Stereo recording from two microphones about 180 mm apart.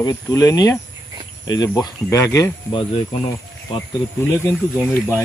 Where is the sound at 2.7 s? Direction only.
30° left (ahead or behind).